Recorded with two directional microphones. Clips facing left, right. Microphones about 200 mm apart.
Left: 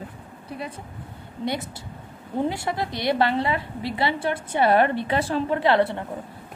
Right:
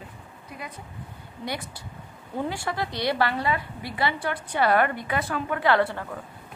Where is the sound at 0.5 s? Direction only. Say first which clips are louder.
Left 6 dB; 35° left (ahead or behind).